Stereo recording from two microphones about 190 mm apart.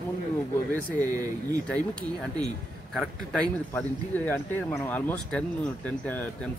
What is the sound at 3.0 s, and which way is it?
Speech, 5° left (ahead or behind).